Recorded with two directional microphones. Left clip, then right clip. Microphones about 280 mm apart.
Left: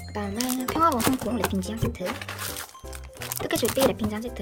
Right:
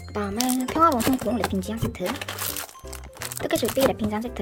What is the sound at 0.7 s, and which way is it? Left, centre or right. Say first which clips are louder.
Speech: right 2 dB; centre.